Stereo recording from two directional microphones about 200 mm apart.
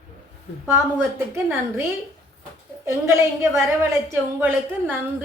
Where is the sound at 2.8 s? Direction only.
15° right (ahead or behind).